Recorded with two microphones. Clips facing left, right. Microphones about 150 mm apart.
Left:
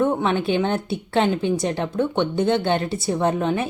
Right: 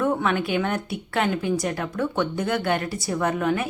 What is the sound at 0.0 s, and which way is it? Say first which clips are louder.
A woman's voice: left 3 dB; 25° left (ahead or behind).